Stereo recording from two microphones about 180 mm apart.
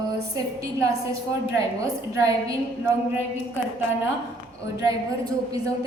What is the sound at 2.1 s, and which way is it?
Speech, 20° right (ahead or behind).